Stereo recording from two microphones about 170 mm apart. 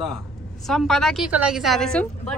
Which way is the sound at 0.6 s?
Centre (ahead or behind).